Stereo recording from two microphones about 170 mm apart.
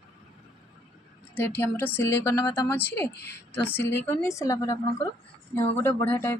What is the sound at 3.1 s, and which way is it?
Speech, 75° left (ahead or behind).